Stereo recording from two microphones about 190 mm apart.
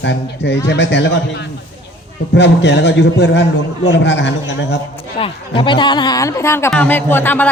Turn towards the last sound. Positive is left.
turn(degrees=10)  # may be behind; listen again after turning